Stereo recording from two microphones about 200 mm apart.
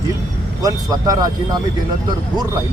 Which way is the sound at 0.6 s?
20° right (ahead or behind).